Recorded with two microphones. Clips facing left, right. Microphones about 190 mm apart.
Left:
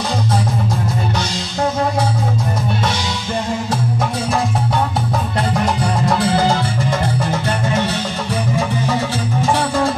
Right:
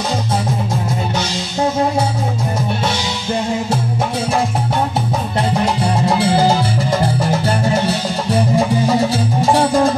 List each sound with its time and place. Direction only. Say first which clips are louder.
6.0 s music: right 2 dB; 30° right (ahead or behind)